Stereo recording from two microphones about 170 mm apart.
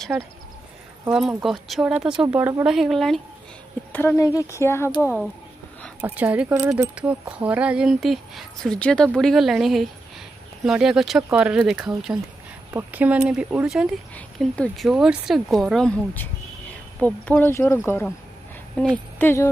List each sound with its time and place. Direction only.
0.1 s speech: 10° right (ahead or behind)
1.1 s speech: centre (ahead or behind); by 5.0 s 15° left (ahead or behind)
5.0 s speech: 5° right (ahead or behind); by 19.5 s 15° left (ahead or behind)